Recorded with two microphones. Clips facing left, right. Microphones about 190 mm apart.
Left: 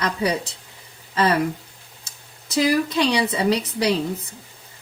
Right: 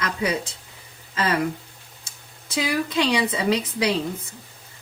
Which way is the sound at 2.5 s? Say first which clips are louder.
Left 4 dB; 35° left (ahead or behind).